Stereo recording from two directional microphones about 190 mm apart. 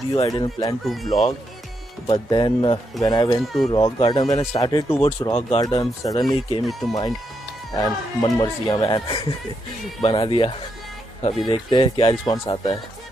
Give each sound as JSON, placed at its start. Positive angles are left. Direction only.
{"t": 0.1, "sound": "speech", "side_deg": 20}
{"t": 0.8, "sound": "speech", "side_deg": 0}
{"t": 2.0, "sound": "speech", "side_deg": 25}
{"t": 3.4, "sound": "speech", "side_deg": 0}
{"t": 3.7, "sound": "speech", "side_deg": 20}